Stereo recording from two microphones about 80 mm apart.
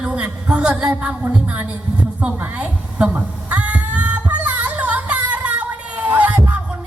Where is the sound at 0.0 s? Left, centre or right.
Centre.